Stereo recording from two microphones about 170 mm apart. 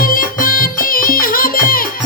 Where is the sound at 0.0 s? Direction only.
55° left (ahead or behind).